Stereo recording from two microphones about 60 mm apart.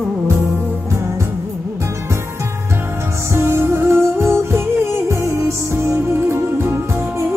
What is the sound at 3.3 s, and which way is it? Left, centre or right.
Music, right.